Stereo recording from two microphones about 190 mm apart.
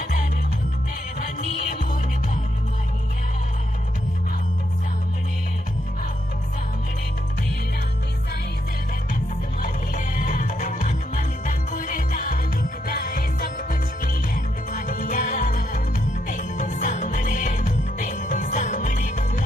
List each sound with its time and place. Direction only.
1.2 s music: 45° left (ahead or behind)
9.6 s music: 45° left (ahead or behind)